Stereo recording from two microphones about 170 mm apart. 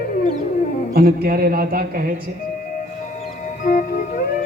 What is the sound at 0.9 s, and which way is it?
A man's voice, 65° right (ahead or behind).